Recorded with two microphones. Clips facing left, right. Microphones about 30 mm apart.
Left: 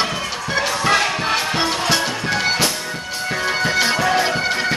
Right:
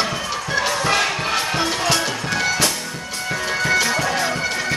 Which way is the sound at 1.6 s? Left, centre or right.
Left.